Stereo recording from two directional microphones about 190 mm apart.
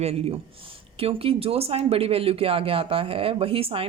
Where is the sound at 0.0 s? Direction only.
30° right (ahead or behind).